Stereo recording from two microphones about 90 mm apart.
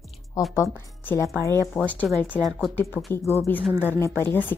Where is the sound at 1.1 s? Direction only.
30° left (ahead or behind).